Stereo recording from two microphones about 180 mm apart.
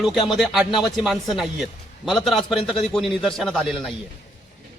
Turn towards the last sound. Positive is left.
turn(degrees=0)  # may be behind; listen again after turning